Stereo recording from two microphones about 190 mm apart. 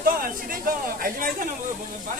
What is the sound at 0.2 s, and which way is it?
Speech, 50° right (ahead or behind).